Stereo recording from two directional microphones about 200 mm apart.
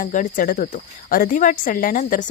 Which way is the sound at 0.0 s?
40° left (ahead or behind).